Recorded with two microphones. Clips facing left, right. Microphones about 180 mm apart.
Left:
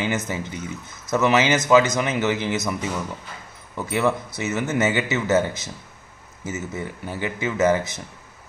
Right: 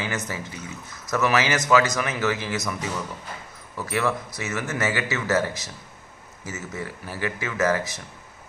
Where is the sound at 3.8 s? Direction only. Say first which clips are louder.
Left 3 dB; 20° left (ahead or behind).